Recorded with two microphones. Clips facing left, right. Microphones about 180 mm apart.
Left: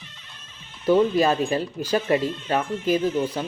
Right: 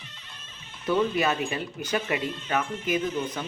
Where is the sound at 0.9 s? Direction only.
35° left (ahead or behind).